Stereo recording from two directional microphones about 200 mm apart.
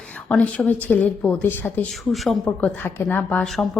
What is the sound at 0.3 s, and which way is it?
Speech, 5° left (ahead or behind).